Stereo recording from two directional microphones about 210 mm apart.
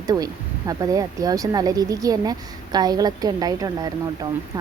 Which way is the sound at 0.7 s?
15° right (ahead or behind).